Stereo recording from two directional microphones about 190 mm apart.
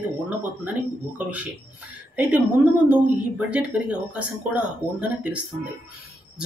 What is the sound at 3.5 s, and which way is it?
Speech, 5° right (ahead or behind).